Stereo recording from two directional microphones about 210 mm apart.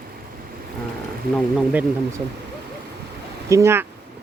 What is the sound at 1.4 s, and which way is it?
Speech, 5° right (ahead or behind).